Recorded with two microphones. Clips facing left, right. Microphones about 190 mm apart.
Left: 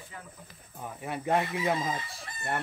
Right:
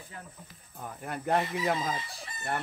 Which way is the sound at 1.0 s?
Centre (ahead or behind).